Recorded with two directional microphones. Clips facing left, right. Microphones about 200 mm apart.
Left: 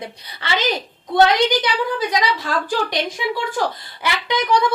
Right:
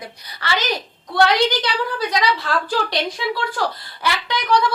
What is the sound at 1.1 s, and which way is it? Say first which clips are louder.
A woman's voice: left 2 dB; 20° left (ahead or behind).